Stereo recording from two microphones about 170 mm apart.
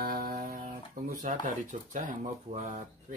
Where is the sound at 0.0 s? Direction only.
60° right (ahead or behind).